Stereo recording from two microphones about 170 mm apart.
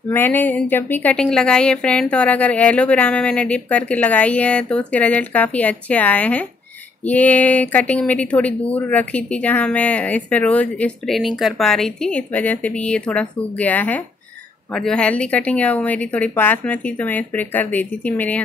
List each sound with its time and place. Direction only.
0.1 s speech: 10° left (ahead or behind)